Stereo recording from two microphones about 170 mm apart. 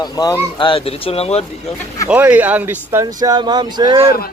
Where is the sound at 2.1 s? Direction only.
10° right (ahead or behind); by 4.1 s 25° right (ahead or behind).